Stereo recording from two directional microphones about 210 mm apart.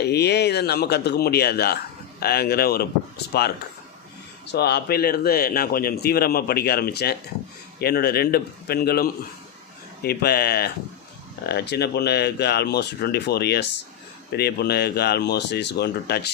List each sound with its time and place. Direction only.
0.0 s a man's voice: 50° left (ahead or behind)
4.4 s a man's voice: 50° left (ahead or behind)